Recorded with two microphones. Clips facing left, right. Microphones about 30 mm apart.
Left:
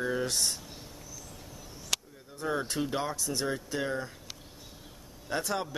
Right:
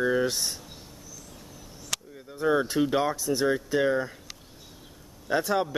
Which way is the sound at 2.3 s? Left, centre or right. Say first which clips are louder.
Right 8 dB; centre.